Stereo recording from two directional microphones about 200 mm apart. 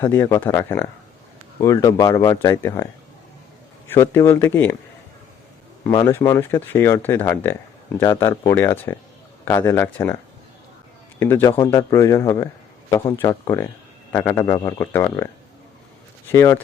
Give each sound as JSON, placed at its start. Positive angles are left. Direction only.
{"t": 0.0, "sound": "speech", "side_deg": 10}
{"t": 5.9, "sound": "speech", "side_deg": 15}
{"t": 11.2, "sound": "speech", "side_deg": 10}
{"t": 16.3, "sound": "speech", "side_deg": 15}